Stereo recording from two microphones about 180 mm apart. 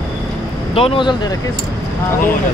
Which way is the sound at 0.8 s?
30° left (ahead or behind).